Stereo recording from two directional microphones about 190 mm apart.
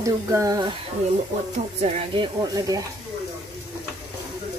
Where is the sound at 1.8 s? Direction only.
35° right (ahead or behind).